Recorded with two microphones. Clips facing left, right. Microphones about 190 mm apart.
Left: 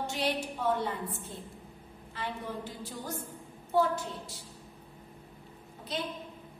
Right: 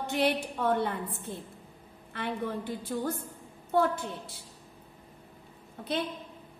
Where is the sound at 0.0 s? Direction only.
55° right (ahead or behind).